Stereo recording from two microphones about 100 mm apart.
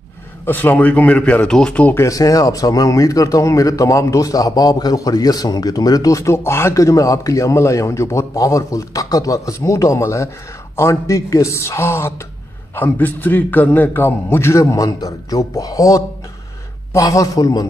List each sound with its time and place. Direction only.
0.5 s a man's voice: 20° left (ahead or behind)
2.0 s a man's voice: 35° left (ahead or behind)